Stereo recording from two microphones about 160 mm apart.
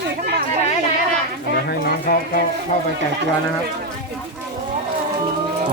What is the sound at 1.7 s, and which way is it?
Speech, 75° left (ahead or behind).